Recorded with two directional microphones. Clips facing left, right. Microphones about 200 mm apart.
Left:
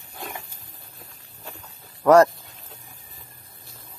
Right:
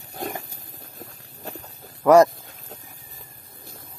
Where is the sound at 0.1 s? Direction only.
40° right (ahead or behind).